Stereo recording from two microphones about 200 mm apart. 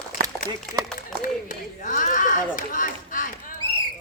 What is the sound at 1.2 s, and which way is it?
Speech, 40° left (ahead or behind).